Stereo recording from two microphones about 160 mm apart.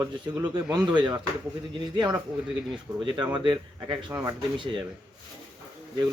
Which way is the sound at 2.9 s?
10° right (ahead or behind).